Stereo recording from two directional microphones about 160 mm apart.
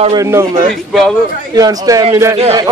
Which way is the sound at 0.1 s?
20° right (ahead or behind).